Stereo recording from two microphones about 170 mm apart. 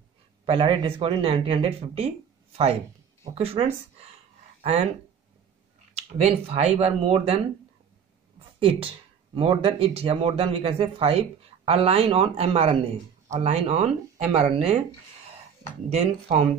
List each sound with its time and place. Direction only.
0.5 s speech: 30° right (ahead or behind)
3.3 s speech: 35° right (ahead or behind)
6.1 s speech: 40° right (ahead or behind)
8.5 s speech: 35° right (ahead or behind)
15.9 s speech: 40° right (ahead or behind)